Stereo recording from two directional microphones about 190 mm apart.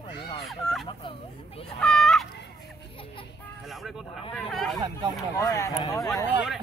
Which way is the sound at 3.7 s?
Centre (ahead or behind).